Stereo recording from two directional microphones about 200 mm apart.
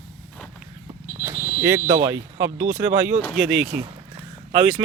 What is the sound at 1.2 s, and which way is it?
Speech, 10° right (ahead or behind).